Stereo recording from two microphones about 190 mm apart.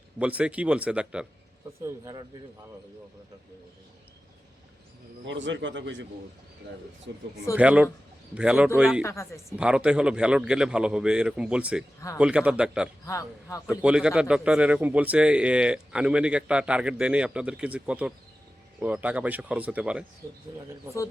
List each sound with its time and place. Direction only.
0.2 s a man's voice: 5° right (ahead or behind)
1.8 s speech: 20° right (ahead or behind)
5.2 s a man's voice: 75° right (ahead or behind)
7.1 s a man's voice: 70° right (ahead or behind)
7.5 s a man's voice: 5° right (ahead or behind)
9.0 s speech: 15° left (ahead or behind)
9.5 s a man's voice: 5° right (ahead or behind)
13.1 s speech: 15° left (ahead or behind)
13.7 s a man's voice: 5° right (ahead or behind)